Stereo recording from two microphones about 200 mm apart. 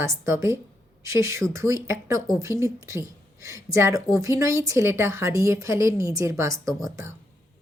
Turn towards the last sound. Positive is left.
turn(degrees=-15)  # may be behind; listen again after turning